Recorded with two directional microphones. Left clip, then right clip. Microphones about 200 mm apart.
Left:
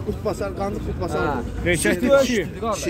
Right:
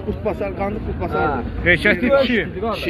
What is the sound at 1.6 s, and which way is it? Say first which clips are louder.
A man's voice: right 6 dB; 20° left (ahead or behind).